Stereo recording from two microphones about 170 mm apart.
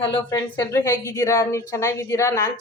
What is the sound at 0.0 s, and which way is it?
A woman's voice, 30° left (ahead or behind).